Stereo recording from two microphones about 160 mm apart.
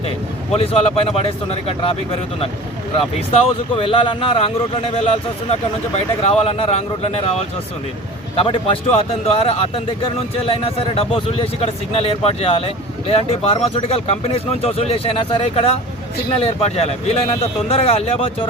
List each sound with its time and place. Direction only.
0.5 s speech: 35° left (ahead or behind)
3.3 s speech: 35° left (ahead or behind)